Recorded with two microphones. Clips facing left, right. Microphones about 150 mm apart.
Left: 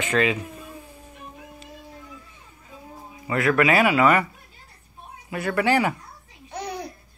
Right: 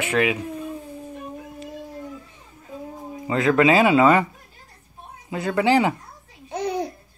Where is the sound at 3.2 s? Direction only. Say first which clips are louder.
Right 3 dB; 20° right (ahead or behind).